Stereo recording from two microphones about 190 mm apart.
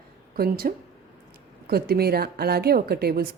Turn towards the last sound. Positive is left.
turn(degrees=-55)  # may be behind; listen again after turning